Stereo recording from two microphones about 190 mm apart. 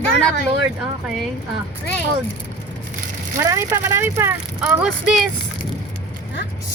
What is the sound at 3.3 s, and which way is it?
Speech, 15° right (ahead or behind).